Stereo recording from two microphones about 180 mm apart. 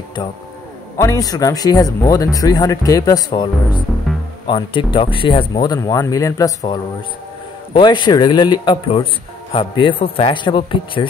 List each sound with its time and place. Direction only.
0.9 s a man's voice: 20° left (ahead or behind)